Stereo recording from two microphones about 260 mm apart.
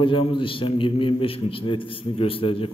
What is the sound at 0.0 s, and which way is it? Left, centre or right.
A man's voice, centre.